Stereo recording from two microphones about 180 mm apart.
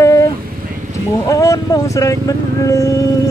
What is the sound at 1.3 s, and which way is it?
Music, 20° left (ahead or behind).